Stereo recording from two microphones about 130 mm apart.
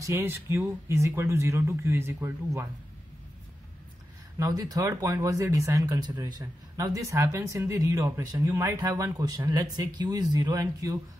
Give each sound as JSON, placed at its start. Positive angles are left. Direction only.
{"t": 0.0, "sound": "speech", "side_deg": -20}
{"t": 4.4, "sound": "speech", "side_deg": -25}